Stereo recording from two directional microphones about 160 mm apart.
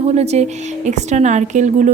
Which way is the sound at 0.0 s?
40° right (ahead or behind).